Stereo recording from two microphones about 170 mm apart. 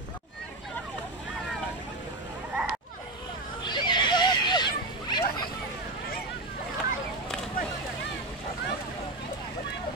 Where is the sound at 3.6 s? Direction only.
25° left (ahead or behind).